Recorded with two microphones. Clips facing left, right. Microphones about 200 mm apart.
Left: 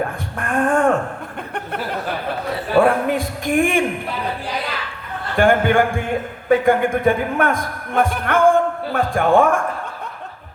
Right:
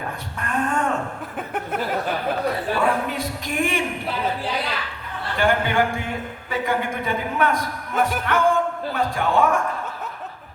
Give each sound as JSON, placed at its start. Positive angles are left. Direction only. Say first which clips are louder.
{"t": 0.3, "sound": "a man's voice", "louder": "left 6 dB", "side_deg": 50}
{"t": 1.5, "sound": "a sound", "louder": "right 1 dB", "side_deg": -5}
{"t": 2.7, "sound": "a man's voice", "louder": "left 7 dB", "side_deg": 50}
{"t": 5.4, "sound": "a man's voice", "louder": "left 6 dB", "side_deg": 50}